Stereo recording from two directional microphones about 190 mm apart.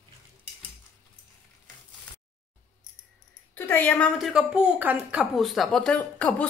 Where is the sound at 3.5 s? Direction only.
10° left (ahead or behind).